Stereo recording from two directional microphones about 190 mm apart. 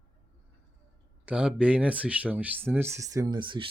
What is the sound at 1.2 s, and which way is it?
Speech, 5° right (ahead or behind).